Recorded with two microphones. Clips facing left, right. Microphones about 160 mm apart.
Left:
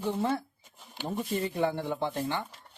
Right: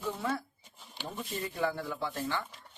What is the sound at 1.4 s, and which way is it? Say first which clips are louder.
Speech: left 1 dB; 25° left (ahead or behind).